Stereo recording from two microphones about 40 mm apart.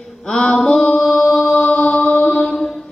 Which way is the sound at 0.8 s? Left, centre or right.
Left.